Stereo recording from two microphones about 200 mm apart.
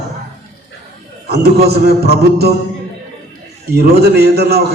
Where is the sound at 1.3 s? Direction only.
55° right (ahead or behind).